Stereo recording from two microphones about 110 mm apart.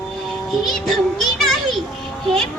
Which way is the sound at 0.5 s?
Centre (ahead or behind).